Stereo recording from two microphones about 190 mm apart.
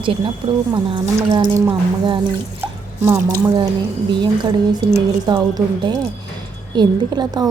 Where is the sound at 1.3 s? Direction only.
20° right (ahead or behind).